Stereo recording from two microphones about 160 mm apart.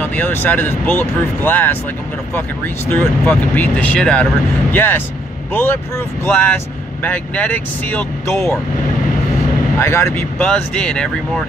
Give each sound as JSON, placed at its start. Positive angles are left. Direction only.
{"t": 0.0, "sound": "speech", "side_deg": 10}
{"t": 9.8, "sound": "speech", "side_deg": 15}